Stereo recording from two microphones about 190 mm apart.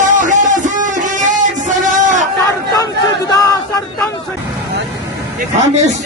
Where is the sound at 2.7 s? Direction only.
20° left (ahead or behind).